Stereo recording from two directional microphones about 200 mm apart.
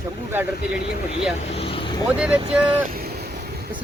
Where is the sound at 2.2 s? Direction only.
5° right (ahead or behind).